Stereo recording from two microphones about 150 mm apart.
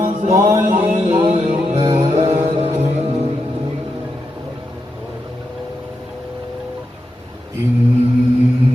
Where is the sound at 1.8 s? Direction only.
25° right (ahead or behind).